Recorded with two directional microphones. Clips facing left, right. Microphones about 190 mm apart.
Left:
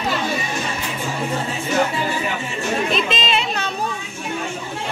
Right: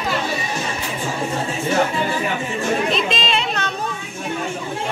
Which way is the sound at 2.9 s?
5° left (ahead or behind).